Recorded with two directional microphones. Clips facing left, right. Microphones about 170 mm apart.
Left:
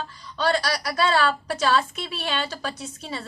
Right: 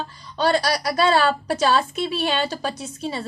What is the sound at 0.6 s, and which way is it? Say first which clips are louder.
Speech: right 4 dB; 40° right (ahead or behind).